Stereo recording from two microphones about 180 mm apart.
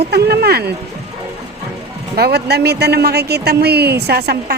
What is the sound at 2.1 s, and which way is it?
A woman's voice, 65° right (ahead or behind).